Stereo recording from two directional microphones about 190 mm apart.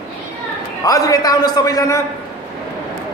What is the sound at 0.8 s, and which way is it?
A man's voice, 20° left (ahead or behind).